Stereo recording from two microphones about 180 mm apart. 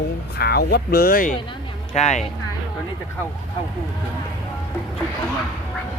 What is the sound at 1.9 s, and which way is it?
Speech, 40° left (ahead or behind).